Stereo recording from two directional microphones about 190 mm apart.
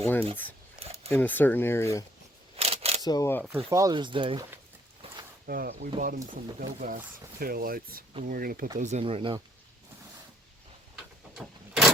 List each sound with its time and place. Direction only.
0.0 s speech: 10° left (ahead or behind)
2.6 s camera: 30° right (ahead or behind)
3.0 s speech: 20° left (ahead or behind)
3.7 s speech: 20° right (ahead or behind)
5.0 s a sound: 30° right (ahead or behind)
5.5 s speech: 50° right (ahead or behind)
8.8 s speech: 35° right (ahead or behind)
11.3 s vehicle: centre (ahead or behind)